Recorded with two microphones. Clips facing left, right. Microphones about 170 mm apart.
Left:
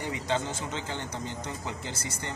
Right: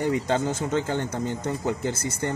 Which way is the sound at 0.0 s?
45° right (ahead or behind).